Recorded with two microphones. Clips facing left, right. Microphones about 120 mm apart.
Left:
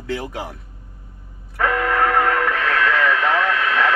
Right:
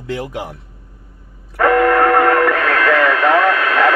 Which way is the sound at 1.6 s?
60° right (ahead or behind).